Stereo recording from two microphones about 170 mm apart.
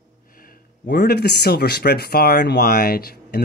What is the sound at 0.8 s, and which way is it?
Speech, 70° left (ahead or behind).